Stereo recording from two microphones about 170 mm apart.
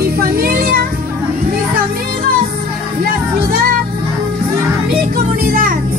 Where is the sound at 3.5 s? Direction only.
60° right (ahead or behind).